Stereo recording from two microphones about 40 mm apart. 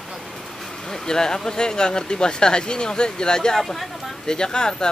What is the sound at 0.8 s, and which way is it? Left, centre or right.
Speech, centre.